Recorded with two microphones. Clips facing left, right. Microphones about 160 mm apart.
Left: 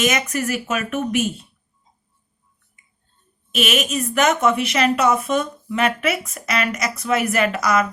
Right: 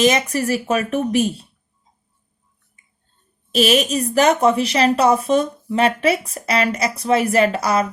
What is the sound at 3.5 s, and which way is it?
A woman's voice, 35° right (ahead or behind).